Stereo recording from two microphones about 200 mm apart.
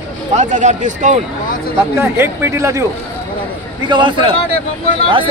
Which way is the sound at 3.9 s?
25° right (ahead or behind).